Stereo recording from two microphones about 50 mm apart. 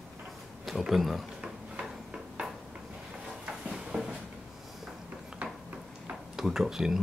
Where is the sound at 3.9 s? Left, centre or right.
Centre.